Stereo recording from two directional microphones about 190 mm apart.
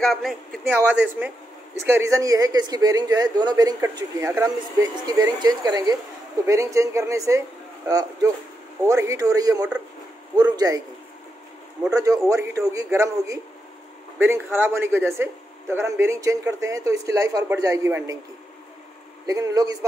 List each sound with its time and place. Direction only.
0.0 s speech: centre (ahead or behind)
1.8 s speech: 15° right (ahead or behind)
11.9 s speech: 15° right (ahead or behind)
19.2 s speech: 20° right (ahead or behind)